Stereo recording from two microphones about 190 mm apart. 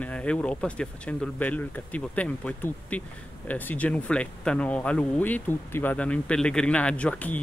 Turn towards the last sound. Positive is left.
turn(degrees=5)  # may be behind; listen again after turning